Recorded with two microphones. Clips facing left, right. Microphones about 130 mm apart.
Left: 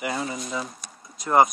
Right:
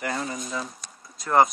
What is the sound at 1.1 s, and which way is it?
Speech, 20° left (ahead or behind).